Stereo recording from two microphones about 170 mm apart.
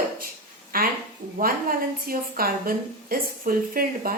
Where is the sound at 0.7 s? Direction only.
60° right (ahead or behind).